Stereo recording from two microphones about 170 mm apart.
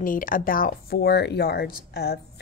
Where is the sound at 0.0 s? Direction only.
55° left (ahead or behind).